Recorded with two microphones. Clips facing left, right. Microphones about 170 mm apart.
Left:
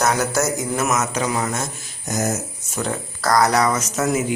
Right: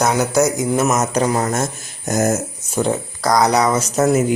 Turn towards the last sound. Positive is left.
turn(degrees=-40)  # may be behind; listen again after turning